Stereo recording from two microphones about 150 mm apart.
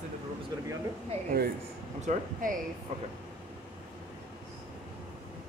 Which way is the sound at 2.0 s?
65° right (ahead or behind).